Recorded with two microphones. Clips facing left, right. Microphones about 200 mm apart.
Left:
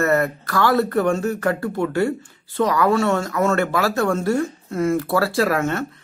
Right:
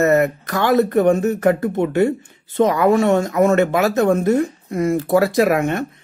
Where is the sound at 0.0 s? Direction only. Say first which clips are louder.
Right 4 dB; 20° right (ahead or behind).